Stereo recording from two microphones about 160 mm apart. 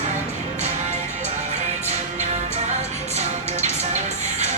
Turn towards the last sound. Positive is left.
turn(degrees=-45)  # may be behind; listen again after turning